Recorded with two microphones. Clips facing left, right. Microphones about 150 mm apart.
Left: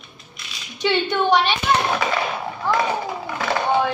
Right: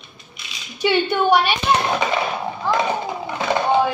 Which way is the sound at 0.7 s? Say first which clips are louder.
Right 2 dB; 10° right (ahead or behind).